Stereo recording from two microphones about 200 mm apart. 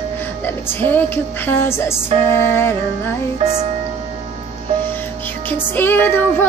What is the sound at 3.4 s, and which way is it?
Music, 35° right (ahead or behind).